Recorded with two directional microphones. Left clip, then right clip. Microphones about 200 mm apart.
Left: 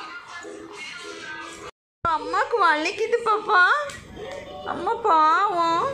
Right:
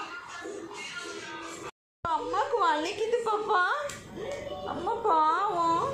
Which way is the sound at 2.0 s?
15° left (ahead or behind).